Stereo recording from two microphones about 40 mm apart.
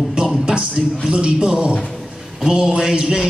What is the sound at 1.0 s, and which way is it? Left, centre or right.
A man's voice, right.